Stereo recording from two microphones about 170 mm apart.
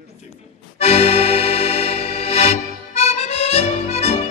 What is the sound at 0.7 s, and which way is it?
Accordion, 35° left (ahead or behind).